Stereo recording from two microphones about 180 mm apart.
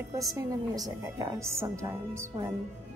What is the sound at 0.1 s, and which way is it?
A woman's voice, 20° right (ahead or behind).